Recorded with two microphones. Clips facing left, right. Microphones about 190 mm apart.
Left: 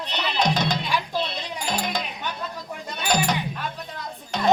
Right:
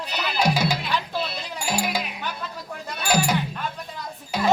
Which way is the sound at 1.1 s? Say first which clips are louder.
Left 1 dB; 5° right (ahead or behind).